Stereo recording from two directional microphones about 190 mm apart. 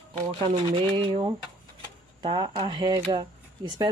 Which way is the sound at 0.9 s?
25° right (ahead or behind).